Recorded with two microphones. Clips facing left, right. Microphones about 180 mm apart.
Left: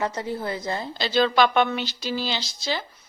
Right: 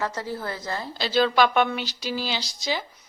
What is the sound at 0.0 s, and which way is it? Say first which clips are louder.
Speech: left 2 dB; 20° left (ahead or behind).